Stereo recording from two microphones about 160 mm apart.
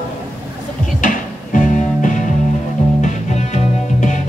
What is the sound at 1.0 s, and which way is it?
Music, 55° left (ahead or behind).